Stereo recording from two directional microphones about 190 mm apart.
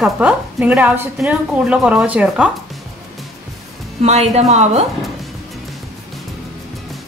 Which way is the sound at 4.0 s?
35° right (ahead or behind).